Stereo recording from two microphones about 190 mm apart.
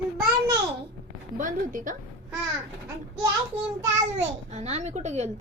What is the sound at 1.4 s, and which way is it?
Speech, 45° right (ahead or behind).